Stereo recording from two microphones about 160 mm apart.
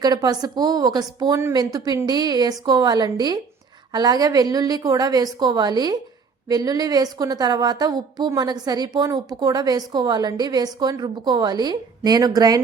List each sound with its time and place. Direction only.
0.0 s a woman's voice: 25° right (ahead or behind)